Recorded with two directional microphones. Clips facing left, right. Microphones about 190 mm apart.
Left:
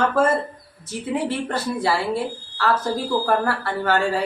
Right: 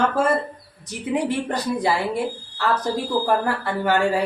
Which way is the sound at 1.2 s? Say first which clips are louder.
Right 1 dB; 15° right (ahead or behind).